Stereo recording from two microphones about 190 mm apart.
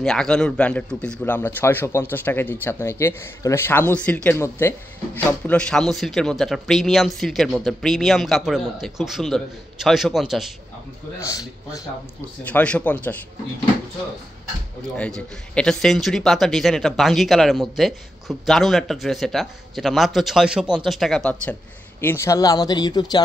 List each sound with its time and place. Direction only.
0.0 s a man's voice: 5° left (ahead or behind)
11.1 s speech: 15° left (ahead or behind)
15.0 s a man's voice: 5° left (ahead or behind); by 23.2 s 20° left (ahead or behind)